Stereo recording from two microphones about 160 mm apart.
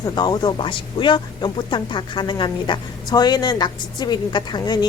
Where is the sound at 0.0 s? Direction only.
25° left (ahead or behind).